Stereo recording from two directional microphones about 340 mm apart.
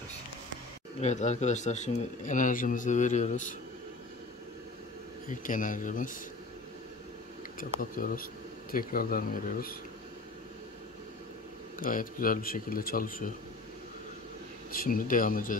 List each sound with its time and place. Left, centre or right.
1.0 s speech: centre
5.3 s speech: left
7.8 s speech: left
11.8 s speech: left
14.7 s speech: left